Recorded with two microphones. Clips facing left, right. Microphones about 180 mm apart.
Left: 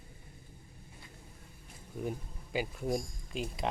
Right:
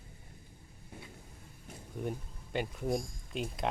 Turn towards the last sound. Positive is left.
turn(degrees=0)  # may be behind; listen again after turning